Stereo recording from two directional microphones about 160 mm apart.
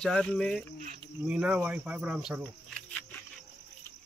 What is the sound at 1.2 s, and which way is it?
Cricket, 5° right (ahead or behind).